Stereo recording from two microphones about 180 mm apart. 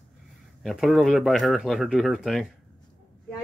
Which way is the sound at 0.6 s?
Centre (ahead or behind).